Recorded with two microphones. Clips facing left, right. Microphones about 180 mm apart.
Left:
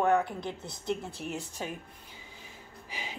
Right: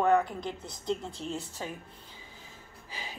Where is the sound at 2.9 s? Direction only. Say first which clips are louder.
Left 1 dB; 20° left (ahead or behind).